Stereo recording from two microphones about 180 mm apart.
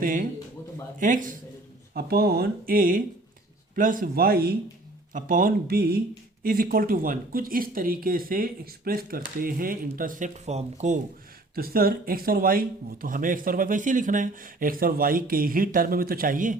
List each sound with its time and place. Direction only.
0.0 s speech: 50° right (ahead or behind)
1.9 s speech: 60° right (ahead or behind)
5.1 s speech: 50° right (ahead or behind)
11.5 s speech: 55° right (ahead or behind)